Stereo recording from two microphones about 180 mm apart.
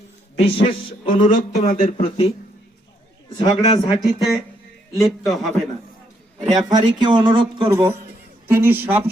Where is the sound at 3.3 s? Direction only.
25° left (ahead or behind).